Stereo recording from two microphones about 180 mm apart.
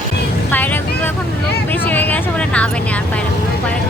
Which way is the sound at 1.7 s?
10° left (ahead or behind).